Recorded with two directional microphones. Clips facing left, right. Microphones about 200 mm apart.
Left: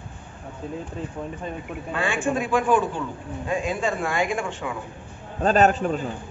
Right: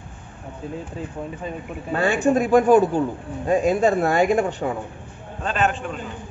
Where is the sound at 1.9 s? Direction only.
40° right (ahead or behind).